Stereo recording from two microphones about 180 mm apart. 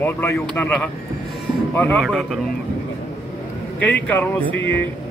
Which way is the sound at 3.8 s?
10° left (ahead or behind).